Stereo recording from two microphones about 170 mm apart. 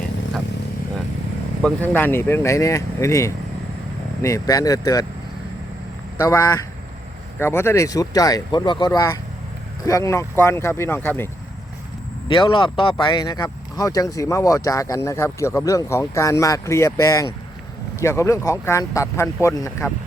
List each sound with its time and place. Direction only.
1.6 s speech: 10° left (ahead or behind)
6.2 s speech: 20° left (ahead or behind)
12.3 s speech: 30° left (ahead or behind)